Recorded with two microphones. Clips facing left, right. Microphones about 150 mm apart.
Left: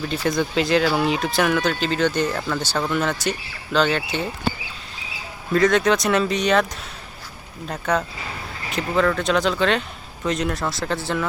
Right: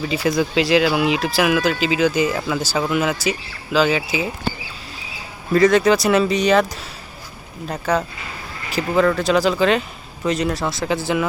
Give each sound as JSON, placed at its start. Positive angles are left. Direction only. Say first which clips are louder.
{"t": 0.0, "sound": "speech", "louder": "right 3 dB", "side_deg": -5}
{"t": 5.5, "sound": "speech", "louder": "right 3 dB", "side_deg": 0}
{"t": 7.7, "sound": "speech", "louder": "right 2 dB", "side_deg": 0}